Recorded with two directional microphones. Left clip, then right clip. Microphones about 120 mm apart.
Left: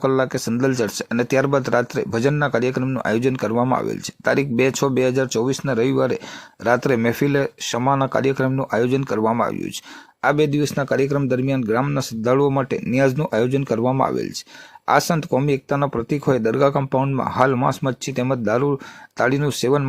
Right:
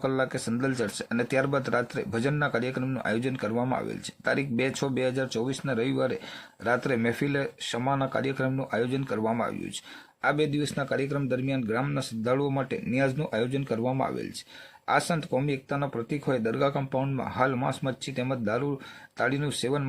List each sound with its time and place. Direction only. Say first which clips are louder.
0.0 s speech: left 9 dB; 40° left (ahead or behind)